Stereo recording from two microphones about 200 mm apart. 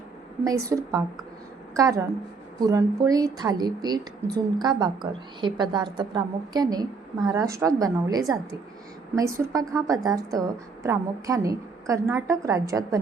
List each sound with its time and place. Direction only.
0.4 s a woman's voice: 15° right (ahead or behind)